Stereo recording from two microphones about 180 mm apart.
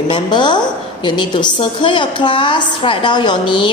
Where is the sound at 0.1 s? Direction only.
25° left (ahead or behind).